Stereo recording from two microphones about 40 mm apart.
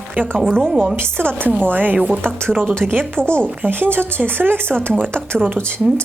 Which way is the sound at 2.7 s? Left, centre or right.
Right.